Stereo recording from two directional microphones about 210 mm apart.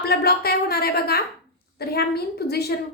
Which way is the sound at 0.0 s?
45° left (ahead or behind).